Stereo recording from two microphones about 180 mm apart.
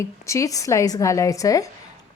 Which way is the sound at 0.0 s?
15° left (ahead or behind).